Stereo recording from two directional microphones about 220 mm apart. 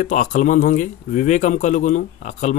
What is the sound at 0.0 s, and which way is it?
Speech, 35° left (ahead or behind).